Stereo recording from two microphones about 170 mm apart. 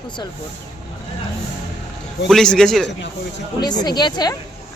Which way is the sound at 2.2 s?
5° left (ahead or behind).